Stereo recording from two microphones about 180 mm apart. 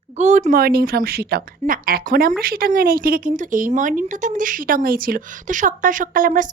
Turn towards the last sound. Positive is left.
turn(degrees=-50)  # may be behind; listen again after turning